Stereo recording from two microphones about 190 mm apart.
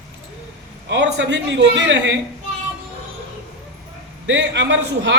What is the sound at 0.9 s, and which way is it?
Speech, 65° right (ahead or behind).